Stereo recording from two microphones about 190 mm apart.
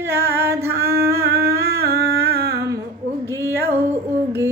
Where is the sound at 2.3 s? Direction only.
55° right (ahead or behind).